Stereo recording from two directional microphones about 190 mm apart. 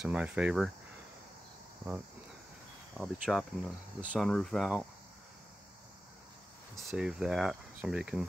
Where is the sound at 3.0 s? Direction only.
Centre (ahead or behind).